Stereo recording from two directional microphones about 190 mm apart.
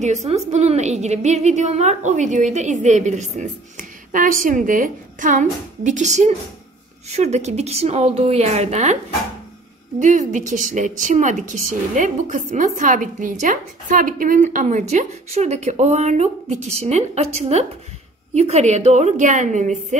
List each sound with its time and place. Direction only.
0.0 s a woman's voice: 35° right (ahead or behind)
10.0 s a woman's voice: 40° right (ahead or behind)